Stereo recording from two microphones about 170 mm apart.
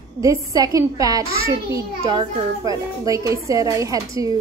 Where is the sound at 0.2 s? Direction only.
20° right (ahead or behind).